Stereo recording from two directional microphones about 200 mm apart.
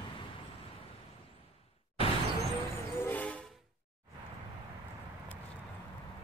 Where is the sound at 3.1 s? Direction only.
5° left (ahead or behind).